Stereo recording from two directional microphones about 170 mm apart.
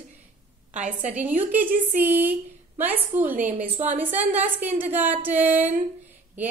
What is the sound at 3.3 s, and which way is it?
Speech, 50° right (ahead or behind).